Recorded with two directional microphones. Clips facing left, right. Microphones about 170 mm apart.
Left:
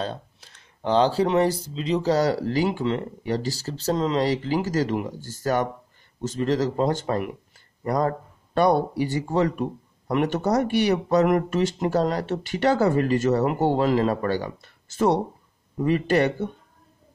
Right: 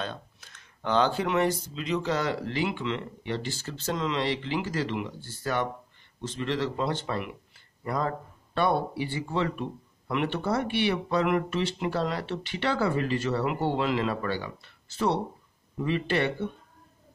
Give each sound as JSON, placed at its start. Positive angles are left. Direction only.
{"t": 0.0, "sound": "speech", "side_deg": 35}